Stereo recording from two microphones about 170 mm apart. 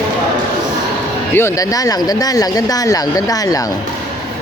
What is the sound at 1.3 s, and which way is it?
Speech, 15° left (ahead or behind).